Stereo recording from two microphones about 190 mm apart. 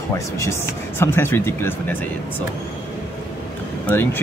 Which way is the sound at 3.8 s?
10° left (ahead or behind).